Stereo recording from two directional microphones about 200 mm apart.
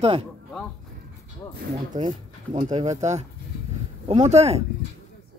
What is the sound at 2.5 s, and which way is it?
Speech, 35° right (ahead or behind).